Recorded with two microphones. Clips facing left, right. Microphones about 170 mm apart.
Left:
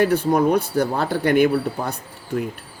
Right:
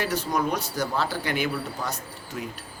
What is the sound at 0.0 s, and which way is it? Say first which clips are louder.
Speech: left 9 dB; 55° left (ahead or behind).